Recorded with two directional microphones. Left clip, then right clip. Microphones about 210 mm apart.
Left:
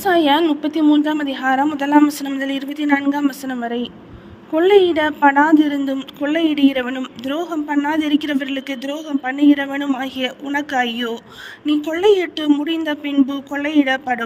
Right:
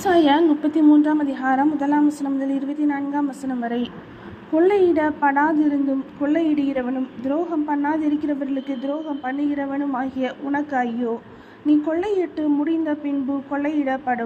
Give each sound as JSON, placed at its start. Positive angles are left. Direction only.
{"t": 0.0, "sound": "a woman's voice", "side_deg": 35}
{"t": 11.9, "sound": "a woman's voice", "side_deg": 50}